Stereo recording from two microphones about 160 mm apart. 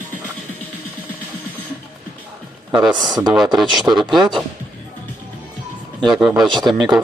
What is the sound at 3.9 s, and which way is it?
Speech, 20° right (ahead or behind).